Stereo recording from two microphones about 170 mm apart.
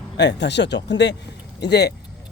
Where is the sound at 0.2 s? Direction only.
90° left.